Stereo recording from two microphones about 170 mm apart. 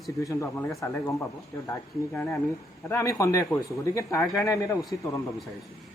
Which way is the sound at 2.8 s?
20° left (ahead or behind).